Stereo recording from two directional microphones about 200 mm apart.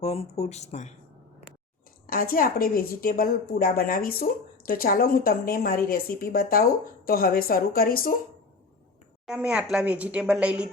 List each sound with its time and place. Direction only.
0.0 s speech: 30° left (ahead or behind)
2.0 s speech: 45° left (ahead or behind)
9.2 s a woman's voice: 5° right (ahead or behind)